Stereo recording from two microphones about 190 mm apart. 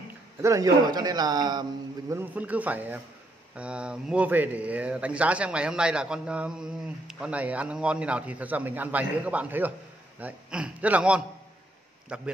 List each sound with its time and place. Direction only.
0.4 s a man's voice: 15° right (ahead or behind)